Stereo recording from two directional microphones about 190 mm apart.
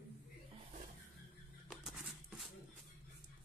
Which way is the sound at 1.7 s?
Centre (ahead or behind).